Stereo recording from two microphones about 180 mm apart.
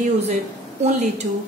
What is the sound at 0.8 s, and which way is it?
Speech, 40° right (ahead or behind).